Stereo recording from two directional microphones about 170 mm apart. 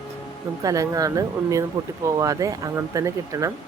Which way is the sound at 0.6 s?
20° right (ahead or behind).